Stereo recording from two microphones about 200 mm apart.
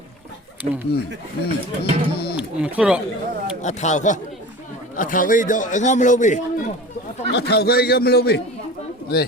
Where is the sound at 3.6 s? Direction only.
35° left (ahead or behind).